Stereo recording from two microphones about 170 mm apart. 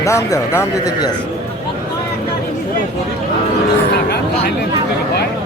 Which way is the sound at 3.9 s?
70° left (ahead or behind).